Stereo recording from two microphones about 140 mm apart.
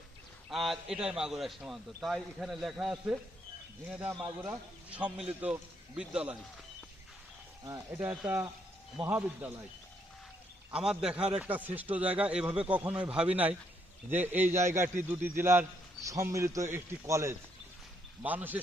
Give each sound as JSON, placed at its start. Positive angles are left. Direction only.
{"t": 0.5, "sound": "a man's voice", "side_deg": 0}
{"t": 7.9, "sound": "a man's voice", "side_deg": -15}
{"t": 10.7, "sound": "a man's voice", "side_deg": -5}